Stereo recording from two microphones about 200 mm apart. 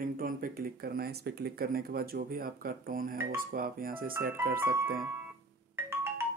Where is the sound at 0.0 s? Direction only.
45° right (ahead or behind).